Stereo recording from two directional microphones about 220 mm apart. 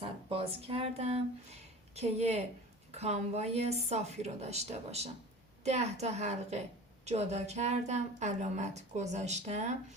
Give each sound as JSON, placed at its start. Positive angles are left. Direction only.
{"t": 0.0, "sound": "a woman's voice", "side_deg": -25}